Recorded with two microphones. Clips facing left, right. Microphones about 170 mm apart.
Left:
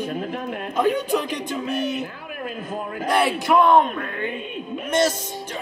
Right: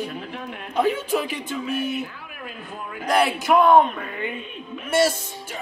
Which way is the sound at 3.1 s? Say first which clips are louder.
Even; centre (ahead or behind).